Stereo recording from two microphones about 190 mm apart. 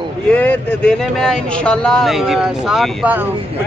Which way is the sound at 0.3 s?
10° left (ahead or behind).